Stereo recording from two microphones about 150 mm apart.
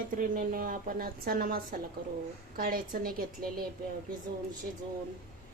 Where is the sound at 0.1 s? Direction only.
65° right (ahead or behind).